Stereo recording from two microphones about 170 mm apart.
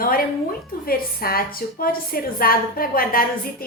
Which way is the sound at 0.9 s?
60° left (ahead or behind).